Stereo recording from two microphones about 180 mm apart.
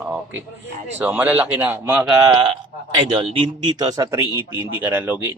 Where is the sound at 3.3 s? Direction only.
25° right (ahead or behind).